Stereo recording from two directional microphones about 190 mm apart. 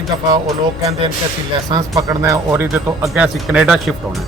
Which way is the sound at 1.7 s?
20° right (ahead or behind).